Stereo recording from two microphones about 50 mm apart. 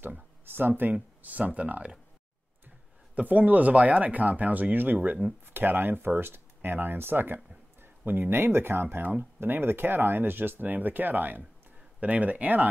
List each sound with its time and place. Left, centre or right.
0.5 s speech: right
1.2 s speech: right
3.2 s speech: right
9.4 s speech: right